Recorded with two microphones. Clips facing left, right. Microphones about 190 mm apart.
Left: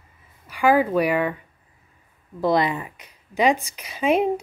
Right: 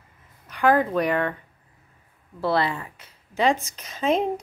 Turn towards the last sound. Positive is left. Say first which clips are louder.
# left 3 dB
turn(degrees=10)  # may be behind; listen again after turning